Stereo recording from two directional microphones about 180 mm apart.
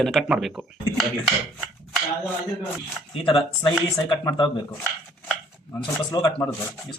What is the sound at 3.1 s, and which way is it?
Speech, 30° left (ahead or behind).